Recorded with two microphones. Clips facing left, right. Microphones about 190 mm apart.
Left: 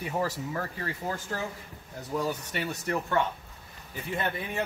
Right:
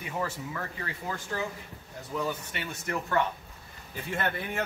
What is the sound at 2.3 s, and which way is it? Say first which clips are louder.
Speech: left 3 dB; 40° left (ahead or behind).